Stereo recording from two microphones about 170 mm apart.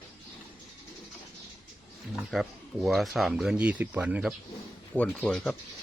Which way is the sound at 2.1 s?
Centre (ahead or behind).